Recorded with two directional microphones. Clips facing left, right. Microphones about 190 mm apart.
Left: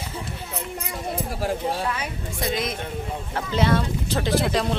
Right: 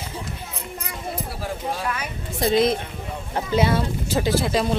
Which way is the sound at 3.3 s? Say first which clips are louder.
Right 2 dB; 15° right (ahead or behind).